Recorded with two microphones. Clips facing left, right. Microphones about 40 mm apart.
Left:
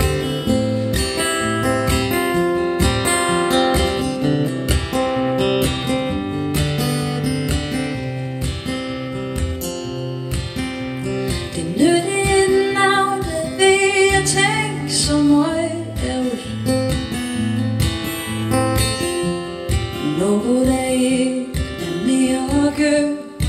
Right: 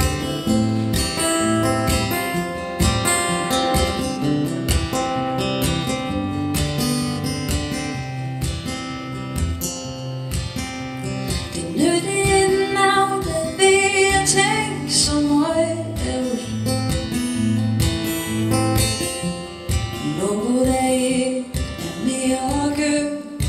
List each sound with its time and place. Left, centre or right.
0.0 s music: left
3.2 s guitar: centre
4.9 s music: centre
11.7 s music: centre
15.0 s music: left
15.4 s music: centre
16.1 s music: centre
20.0 s music: left
20.5 s music: centre